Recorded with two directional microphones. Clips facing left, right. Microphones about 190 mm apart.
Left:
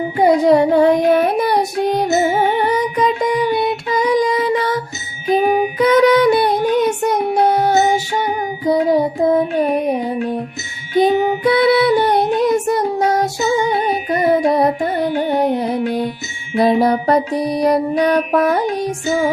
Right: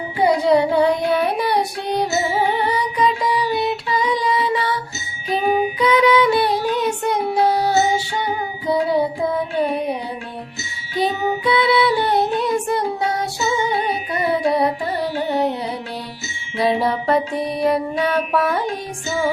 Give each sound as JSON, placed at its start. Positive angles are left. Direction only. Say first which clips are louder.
{"t": 0.2, "sound": "child singing", "louder": "left 4 dB", "side_deg": 50}
{"t": 2.3, "sound": "music", "louder": "left 4 dB", "side_deg": 45}
{"t": 5.4, "sound": "child singing", "louder": "left 2 dB", "side_deg": 50}
{"t": 7.6, "sound": "music", "louder": "left 3 dB", "side_deg": 45}
{"t": 10.9, "sound": "music", "louder": "left 7 dB", "side_deg": 45}